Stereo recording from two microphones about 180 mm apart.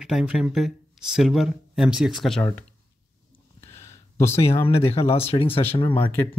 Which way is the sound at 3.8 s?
15° left (ahead or behind).